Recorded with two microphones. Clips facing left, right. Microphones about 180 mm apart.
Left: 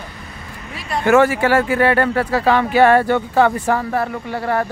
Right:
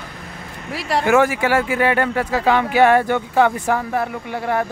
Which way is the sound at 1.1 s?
10° right (ahead or behind).